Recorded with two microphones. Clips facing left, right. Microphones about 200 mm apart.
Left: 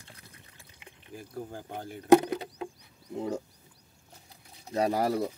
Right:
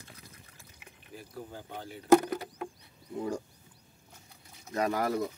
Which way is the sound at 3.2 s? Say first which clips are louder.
Left 1 dB; 25° left (ahead or behind).